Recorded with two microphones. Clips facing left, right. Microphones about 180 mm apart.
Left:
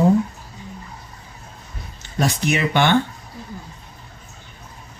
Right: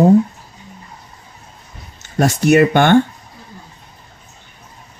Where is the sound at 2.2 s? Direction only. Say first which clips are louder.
Right 9 dB; 45° right (ahead or behind).